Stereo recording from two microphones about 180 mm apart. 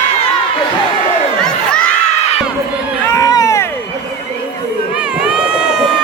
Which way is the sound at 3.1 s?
20° left (ahead or behind).